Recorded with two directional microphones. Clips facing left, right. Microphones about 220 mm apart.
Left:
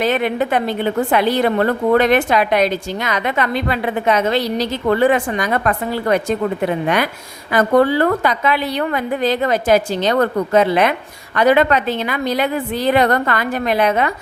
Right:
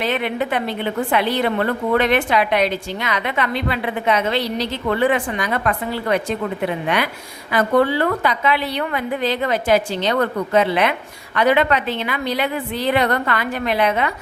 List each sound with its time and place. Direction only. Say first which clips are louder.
0.0 s a woman's voice: left 4 dB; 45° left (ahead or behind)